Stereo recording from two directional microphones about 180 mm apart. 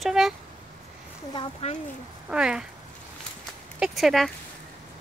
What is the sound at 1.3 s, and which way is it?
Speech, 30° left (ahead or behind).